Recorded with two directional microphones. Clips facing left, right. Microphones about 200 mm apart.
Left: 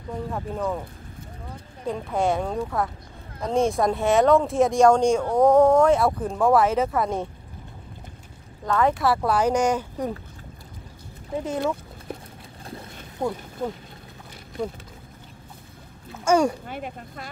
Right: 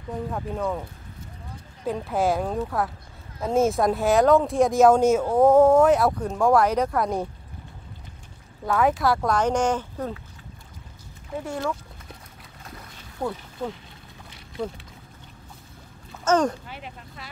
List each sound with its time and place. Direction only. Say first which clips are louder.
0.3 s speech: left 1 dB; centre (ahead or behind)
1.9 s speech: even; 5° right (ahead or behind)
8.7 s speech: even; centre (ahead or behind)
11.4 s speech: left 3 dB; 20° left (ahead or behind)
13.2 s speech: left 2 dB; 15° left (ahead or behind)
16.1 s rowboat: left 1 dB; 10° left (ahead or behind)
16.6 s speech: left 6 dB; 50° left (ahead or behind)